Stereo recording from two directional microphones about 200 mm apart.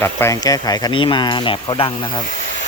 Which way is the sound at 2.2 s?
40° left (ahead or behind).